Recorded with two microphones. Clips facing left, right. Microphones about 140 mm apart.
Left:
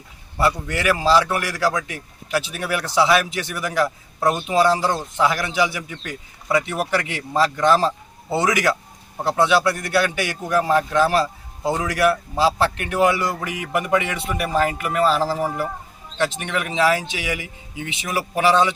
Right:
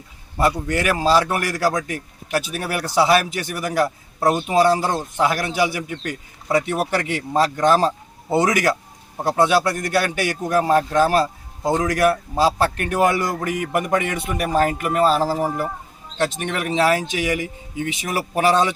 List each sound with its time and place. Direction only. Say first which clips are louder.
0.3 s a man's voice: right 2 dB; 45° right (ahead or behind)
3.8 s a man's voice: right 1 dB; 30° right (ahead or behind); by 18.7 s 45° right (ahead or behind)